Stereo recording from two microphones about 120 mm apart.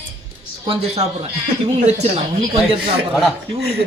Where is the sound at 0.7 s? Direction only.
55° right (ahead or behind).